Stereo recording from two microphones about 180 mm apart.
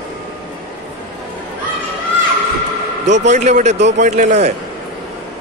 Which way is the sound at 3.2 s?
40° right (ahead or behind).